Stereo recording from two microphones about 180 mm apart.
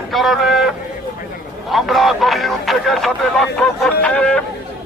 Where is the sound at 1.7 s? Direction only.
Centre (ahead or behind).